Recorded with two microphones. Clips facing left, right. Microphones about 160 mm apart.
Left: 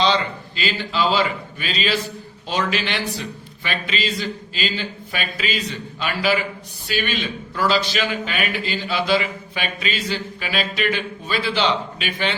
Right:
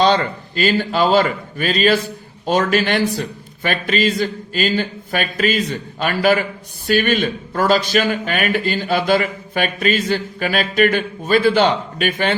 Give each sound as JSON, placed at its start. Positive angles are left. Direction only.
{"t": 0.0, "sound": "a man's voice", "side_deg": -50}